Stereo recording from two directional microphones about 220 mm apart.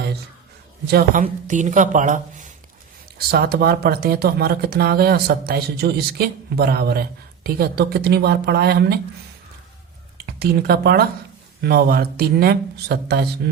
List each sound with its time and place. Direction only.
0.9 s a woman's voice: 45° right (ahead or behind)
10.2 s speech: 45° right (ahead or behind)